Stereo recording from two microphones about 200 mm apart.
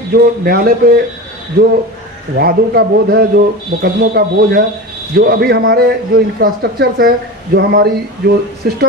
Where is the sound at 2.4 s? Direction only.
50° right (ahead or behind).